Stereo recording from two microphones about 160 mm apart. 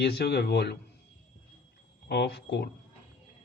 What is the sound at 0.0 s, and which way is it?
Speech, 90° left.